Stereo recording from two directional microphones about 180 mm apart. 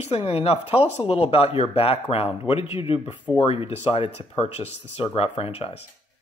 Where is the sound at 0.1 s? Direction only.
30° left (ahead or behind).